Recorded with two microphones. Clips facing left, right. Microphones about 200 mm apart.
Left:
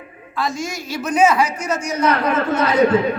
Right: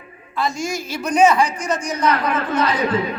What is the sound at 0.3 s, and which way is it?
A man's voice, centre (ahead or behind).